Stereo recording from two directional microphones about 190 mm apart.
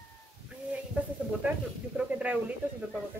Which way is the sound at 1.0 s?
5° right (ahead or behind).